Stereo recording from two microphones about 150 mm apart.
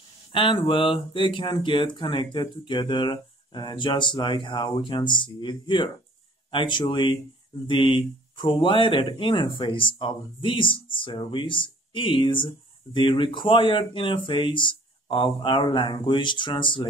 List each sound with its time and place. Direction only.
0.3 s speech: 35° left (ahead or behind)